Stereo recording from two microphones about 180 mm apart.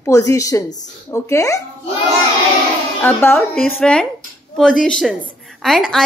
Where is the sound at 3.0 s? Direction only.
10° left (ahead or behind).